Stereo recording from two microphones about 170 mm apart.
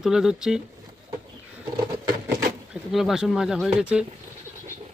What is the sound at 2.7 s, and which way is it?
Speech, centre (ahead or behind).